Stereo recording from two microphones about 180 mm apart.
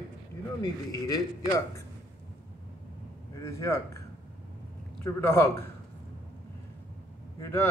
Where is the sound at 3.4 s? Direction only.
15° left (ahead or behind).